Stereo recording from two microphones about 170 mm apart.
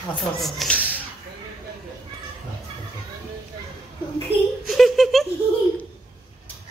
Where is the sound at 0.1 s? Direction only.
5° left (ahead or behind).